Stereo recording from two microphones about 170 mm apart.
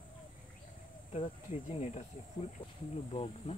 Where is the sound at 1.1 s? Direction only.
35° left (ahead or behind).